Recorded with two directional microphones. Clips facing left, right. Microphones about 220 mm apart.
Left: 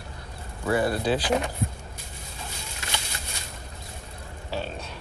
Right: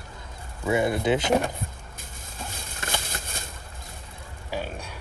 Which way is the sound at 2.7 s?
50° right (ahead or behind).